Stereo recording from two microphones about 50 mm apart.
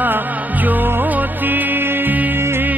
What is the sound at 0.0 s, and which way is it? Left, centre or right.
Music, right.